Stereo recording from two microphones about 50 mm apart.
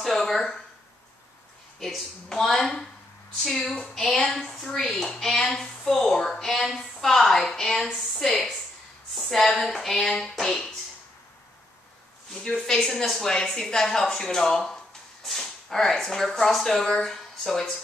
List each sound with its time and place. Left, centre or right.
0.0 s a sound: centre
1.8 s speech: centre
12.6 s speech: centre